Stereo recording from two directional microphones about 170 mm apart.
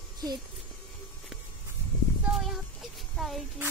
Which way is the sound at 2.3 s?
Centre (ahead or behind).